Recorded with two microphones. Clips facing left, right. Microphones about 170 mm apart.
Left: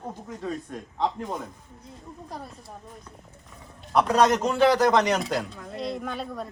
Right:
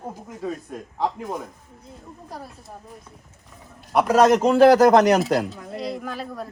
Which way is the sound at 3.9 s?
5° right (ahead or behind).